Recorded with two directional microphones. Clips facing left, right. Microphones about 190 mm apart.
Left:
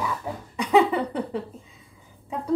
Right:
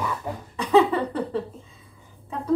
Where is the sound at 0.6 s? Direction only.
15° left (ahead or behind).